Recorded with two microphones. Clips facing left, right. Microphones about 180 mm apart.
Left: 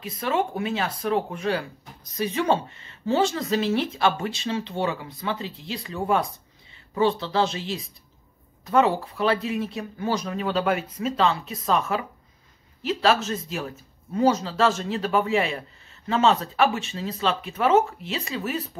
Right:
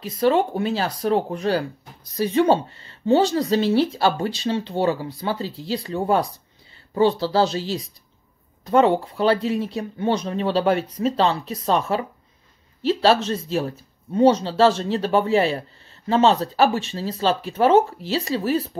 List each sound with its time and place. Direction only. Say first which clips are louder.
0.0 s speech: right 6 dB; 35° right (ahead or behind)